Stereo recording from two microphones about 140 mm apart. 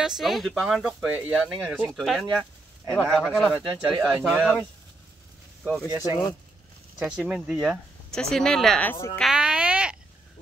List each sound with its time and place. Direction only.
0.0 s speech: centre (ahead or behind)
6.0 s speech: 30° left (ahead or behind)
7.0 s speech: 5° right (ahead or behind)
8.1 s speech: 5° left (ahead or behind)
9.1 s a sound: centre (ahead or behind)